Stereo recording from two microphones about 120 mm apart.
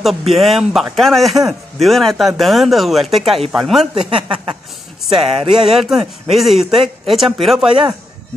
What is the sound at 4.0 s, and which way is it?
Speech, 45° right (ahead or behind).